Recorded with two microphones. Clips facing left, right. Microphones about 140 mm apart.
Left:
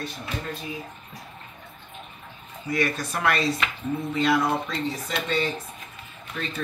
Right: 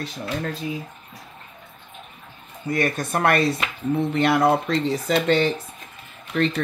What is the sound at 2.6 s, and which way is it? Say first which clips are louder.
Speech: right 3 dB; 50° right (ahead or behind).